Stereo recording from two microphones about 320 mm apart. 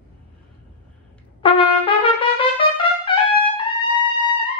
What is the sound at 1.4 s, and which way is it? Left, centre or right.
Trumpet, centre.